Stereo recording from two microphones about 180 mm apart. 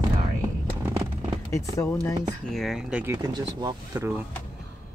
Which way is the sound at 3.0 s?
20° right (ahead or behind).